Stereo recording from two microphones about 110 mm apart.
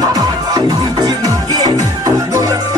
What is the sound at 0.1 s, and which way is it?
Music, 35° right (ahead or behind).